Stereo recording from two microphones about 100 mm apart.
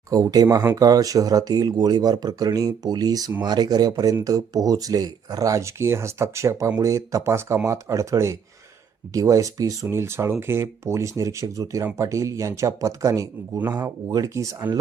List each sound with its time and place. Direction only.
0.1 s speech: 35° right (ahead or behind)
0.8 s speech: 35° right (ahead or behind)